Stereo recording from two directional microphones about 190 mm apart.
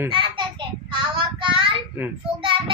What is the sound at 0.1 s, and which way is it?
Child singing, 25° right (ahead or behind).